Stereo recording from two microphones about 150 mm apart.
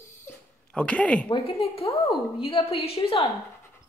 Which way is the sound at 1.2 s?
35° left (ahead or behind).